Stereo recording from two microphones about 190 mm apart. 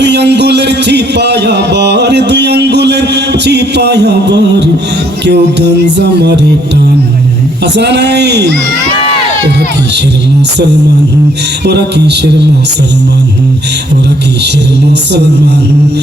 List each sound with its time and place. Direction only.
0.0 s speech: 60° right (ahead or behind)
7.6 s speech: 60° right (ahead or behind)
11.6 s speech: 60° right (ahead or behind)